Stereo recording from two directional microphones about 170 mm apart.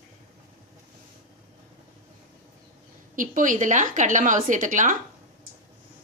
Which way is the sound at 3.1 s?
50° right (ahead or behind).